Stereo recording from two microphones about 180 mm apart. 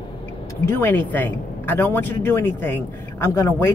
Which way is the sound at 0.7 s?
10° left (ahead or behind).